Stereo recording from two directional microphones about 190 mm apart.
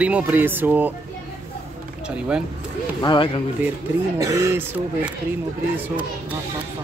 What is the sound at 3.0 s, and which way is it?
Speech, 25° left (ahead or behind).